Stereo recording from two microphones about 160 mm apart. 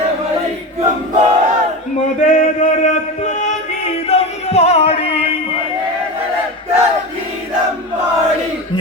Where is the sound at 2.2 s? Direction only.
50° left (ahead or behind).